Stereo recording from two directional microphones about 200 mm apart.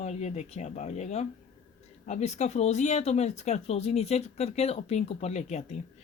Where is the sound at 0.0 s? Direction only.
35° left (ahead or behind).